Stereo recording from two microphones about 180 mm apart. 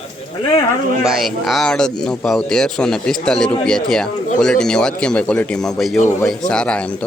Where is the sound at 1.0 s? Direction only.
Centre (ahead or behind).